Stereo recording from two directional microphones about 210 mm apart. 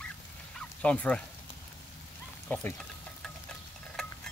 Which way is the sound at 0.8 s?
5° left (ahead or behind).